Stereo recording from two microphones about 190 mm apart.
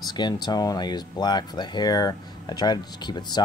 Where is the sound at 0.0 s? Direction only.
20° left (ahead or behind).